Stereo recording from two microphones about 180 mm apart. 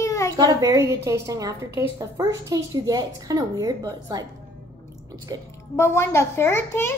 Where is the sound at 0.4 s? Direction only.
20° right (ahead or behind).